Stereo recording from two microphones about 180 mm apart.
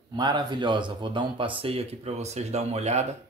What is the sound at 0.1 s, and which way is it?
Speech, 25° right (ahead or behind).